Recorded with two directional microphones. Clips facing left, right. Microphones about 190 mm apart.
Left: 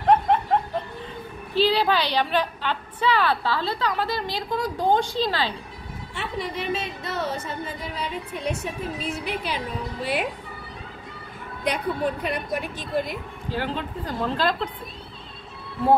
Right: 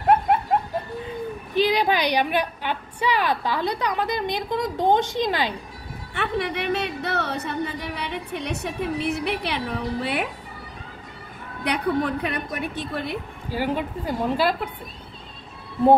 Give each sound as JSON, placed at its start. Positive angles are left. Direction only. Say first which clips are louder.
{"t": 0.0, "sound": "snicker", "louder": "even", "side_deg": -10}
{"t": 1.5, "sound": "a woman's voice", "louder": "even", "side_deg": -15}
{"t": 6.1, "sound": "speech", "louder": "right 4 dB", "side_deg": -65}
{"t": 11.6, "sound": "a woman's voice", "louder": "right 2 dB", "side_deg": -65}
{"t": 13.5, "sound": "a woman's voice", "louder": "right 3 dB", "side_deg": -10}